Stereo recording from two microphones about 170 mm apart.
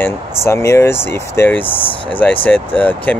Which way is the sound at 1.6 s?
30° left (ahead or behind).